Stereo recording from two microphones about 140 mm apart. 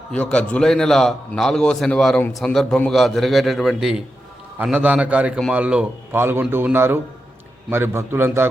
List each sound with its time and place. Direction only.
0.1 s a man's voice: 10° left (ahead or behind); by 8.4 s 15° right (ahead or behind)